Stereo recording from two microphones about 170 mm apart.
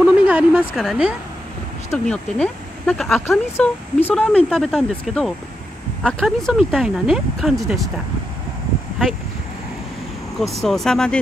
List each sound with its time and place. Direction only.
0.0 s a sound: 5° right (ahead or behind)
1.9 s speech: 5° left (ahead or behind)
10.4 s speech: centre (ahead or behind)